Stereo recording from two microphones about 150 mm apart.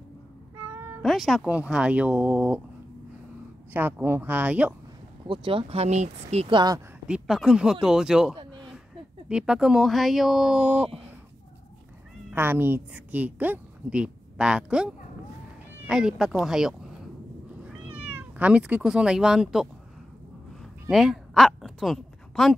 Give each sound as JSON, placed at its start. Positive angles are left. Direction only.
{"t": 1.0, "sound": "speech", "side_deg": 0}
{"t": 3.7, "sound": "speech", "side_deg": -15}
{"t": 5.2, "sound": "speech", "side_deg": -35}
{"t": 7.1, "sound": "speech", "side_deg": -5}
{"t": 12.3, "sound": "a woman's voice", "side_deg": -15}
{"t": 17.8, "sound": "speech", "side_deg": -10}
{"t": 20.9, "sound": "speech", "side_deg": 0}